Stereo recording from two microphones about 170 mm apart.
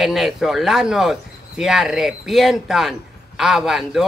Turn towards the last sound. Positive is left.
turn(degrees=0)  # may be behind; listen again after turning